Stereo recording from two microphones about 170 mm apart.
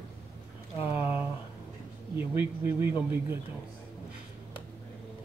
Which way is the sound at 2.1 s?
10° right (ahead or behind).